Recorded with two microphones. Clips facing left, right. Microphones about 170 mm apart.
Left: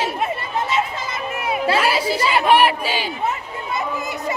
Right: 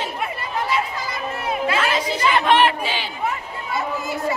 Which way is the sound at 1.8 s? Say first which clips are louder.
Left 2 dB; 10° left (ahead or behind).